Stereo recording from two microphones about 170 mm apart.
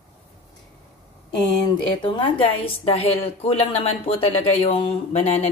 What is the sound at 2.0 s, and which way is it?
A woman's voice, 30° left (ahead or behind).